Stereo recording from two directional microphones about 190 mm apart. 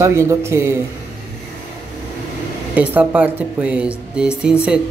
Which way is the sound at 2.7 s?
10° right (ahead or behind).